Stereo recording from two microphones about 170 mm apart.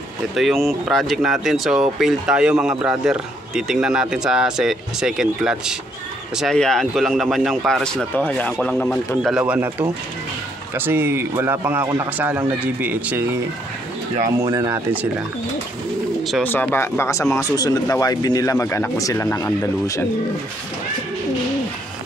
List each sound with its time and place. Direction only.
0.4 s a man's voice: centre (ahead or behind)
14.2 s a man's voice: 20° right (ahead or behind)
16.4 s speech: 10° left (ahead or behind)